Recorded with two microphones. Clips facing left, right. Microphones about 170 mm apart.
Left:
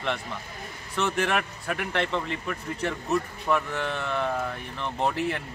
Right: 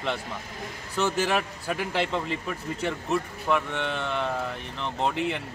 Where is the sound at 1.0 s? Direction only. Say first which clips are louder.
Right 1 dB; 5° right (ahead or behind).